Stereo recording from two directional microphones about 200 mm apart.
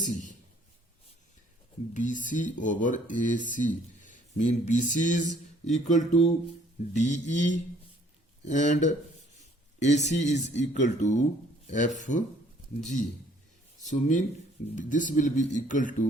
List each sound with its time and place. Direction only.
0.0 s a sound: 40° left (ahead or behind)
2.0 s speech: 40° left (ahead or behind)
13.8 s speech: 40° left (ahead or behind)